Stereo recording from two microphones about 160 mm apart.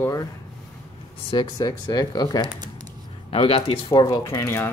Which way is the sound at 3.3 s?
35° left (ahead or behind).